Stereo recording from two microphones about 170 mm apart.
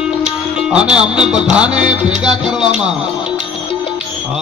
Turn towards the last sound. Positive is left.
turn(degrees=-5)  # may be behind; listen again after turning